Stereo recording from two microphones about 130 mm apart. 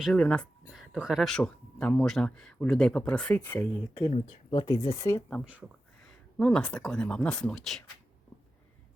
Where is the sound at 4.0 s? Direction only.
40° left (ahead or behind); by 5.2 s 25° left (ahead or behind).